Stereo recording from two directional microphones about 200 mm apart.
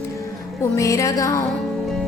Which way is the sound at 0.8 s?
15° left (ahead or behind).